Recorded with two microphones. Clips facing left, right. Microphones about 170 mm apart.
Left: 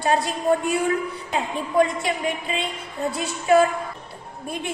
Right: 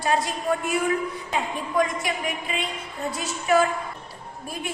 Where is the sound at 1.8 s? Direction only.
25° left (ahead or behind).